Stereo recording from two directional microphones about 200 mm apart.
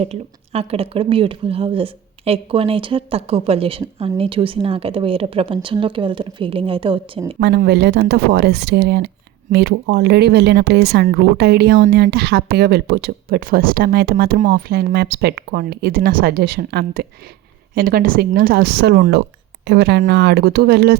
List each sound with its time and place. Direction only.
0.0 s speech: 30° right (ahead or behind)
7.3 s speech: 50° right (ahead or behind)